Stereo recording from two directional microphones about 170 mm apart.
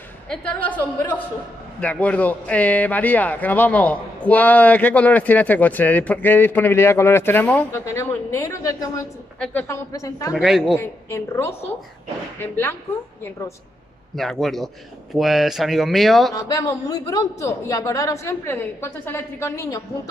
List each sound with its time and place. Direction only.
0.3 s a man's voice: 5° left (ahead or behind)
10.3 s speech: 5° right (ahead or behind)
10.8 s a man's voice: 15° left (ahead or behind)
14.1 s speech: centre (ahead or behind)
16.3 s a woman's voice: 20° left (ahead or behind)